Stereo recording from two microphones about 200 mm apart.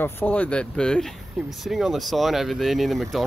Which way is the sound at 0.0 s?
10° left (ahead or behind).